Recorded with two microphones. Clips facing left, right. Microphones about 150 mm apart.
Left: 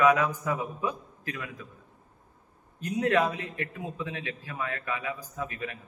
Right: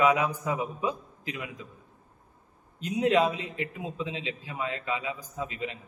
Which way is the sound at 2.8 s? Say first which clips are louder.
Right 1 dB; 20° right (ahead or behind).